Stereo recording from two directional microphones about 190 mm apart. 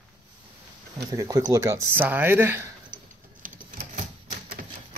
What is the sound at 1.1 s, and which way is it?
Speech, 20° right (ahead or behind).